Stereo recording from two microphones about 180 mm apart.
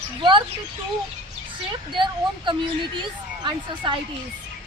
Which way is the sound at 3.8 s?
25° right (ahead or behind).